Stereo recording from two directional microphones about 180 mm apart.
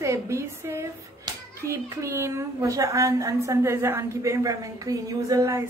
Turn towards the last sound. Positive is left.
turn(degrees=-20)  # may be behind; listen again after turning